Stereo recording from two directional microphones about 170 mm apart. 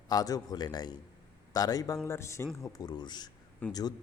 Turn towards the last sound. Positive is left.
turn(degrees=20)  # may be behind; listen again after turning